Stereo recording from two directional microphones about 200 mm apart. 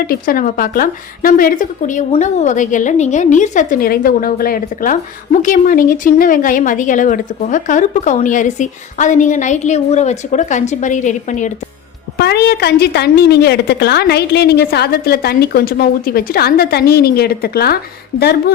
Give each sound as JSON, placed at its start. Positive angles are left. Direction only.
{"t": 0.1, "sound": "a woman's voice", "side_deg": 45}
{"t": 12.1, "sound": "a woman's voice", "side_deg": 55}